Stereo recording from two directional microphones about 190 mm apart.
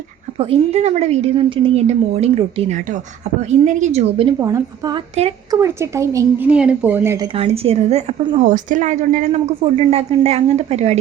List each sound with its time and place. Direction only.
0.3 s a woman's voice: 30° right (ahead or behind)
4.4 s a woman's voice: 15° right (ahead or behind)
7.3 s a woman's voice: 30° right (ahead or behind)